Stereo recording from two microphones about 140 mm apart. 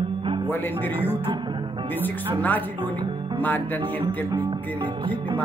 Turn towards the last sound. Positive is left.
turn(degrees=-40)  # may be behind; listen again after turning